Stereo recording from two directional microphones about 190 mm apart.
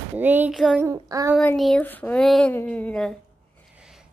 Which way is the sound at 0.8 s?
20° right (ahead or behind).